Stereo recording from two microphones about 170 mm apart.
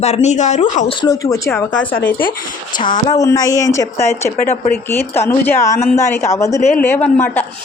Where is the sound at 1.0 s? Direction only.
20° left (ahead or behind).